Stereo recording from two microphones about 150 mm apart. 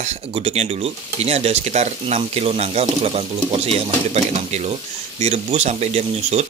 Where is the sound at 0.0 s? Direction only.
45° right (ahead or behind).